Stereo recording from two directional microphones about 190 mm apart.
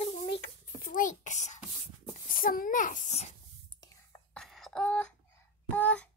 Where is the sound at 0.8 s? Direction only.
45° left (ahead or behind).